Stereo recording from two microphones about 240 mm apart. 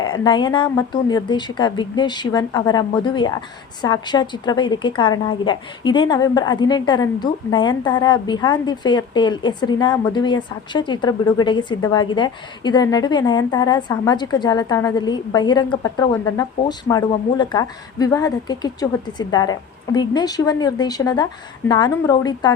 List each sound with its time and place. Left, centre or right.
0.0 s a woman's voice: centre